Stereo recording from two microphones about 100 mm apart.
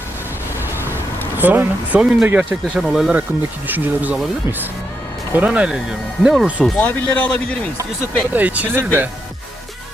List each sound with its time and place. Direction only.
1.4 s speech: 20° right (ahead or behind)
2.7 s speech: centre (ahead or behind)
3.7 s speech: 15° right (ahead or behind)
5.3 s speech: 15° right (ahead or behind)
6.7 s speech: 15° left (ahead or behind)
8.3 s speech: 15° right (ahead or behind)